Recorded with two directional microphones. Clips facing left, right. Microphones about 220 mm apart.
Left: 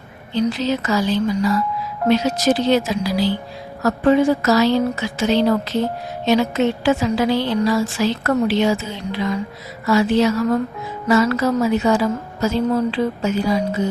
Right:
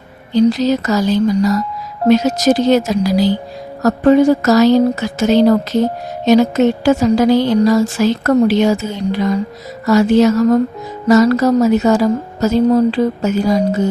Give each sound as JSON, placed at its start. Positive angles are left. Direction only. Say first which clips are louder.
{"t": 0.3, "sound": "a woman's voice", "louder": "right 7 dB", "side_deg": -40}